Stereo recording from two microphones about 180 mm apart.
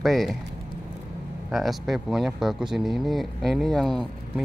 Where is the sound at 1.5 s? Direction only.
Centre (ahead or behind).